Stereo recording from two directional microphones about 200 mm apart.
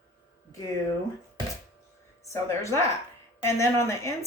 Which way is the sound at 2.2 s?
15° left (ahead or behind).